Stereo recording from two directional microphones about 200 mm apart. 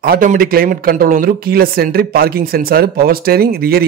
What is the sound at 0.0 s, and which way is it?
Speech, 45° right (ahead or behind).